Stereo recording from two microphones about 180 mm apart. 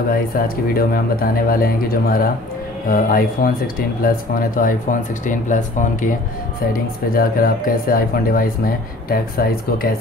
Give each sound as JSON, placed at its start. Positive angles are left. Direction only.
{"t": 0.7, "sound": "speech", "side_deg": 55}